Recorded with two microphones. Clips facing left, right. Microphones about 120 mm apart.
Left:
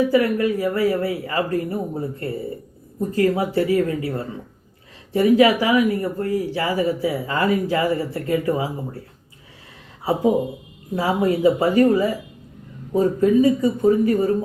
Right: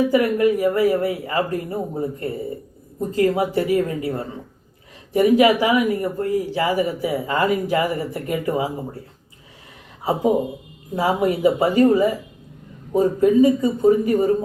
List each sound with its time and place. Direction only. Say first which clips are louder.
0.0 s speech: right 1 dB; 20° right (ahead or behind)
10.9 s speech: even; 20° right (ahead or behind)